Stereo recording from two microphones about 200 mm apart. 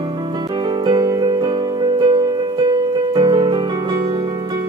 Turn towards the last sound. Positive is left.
turn(degrees=-25)  # may be behind; listen again after turning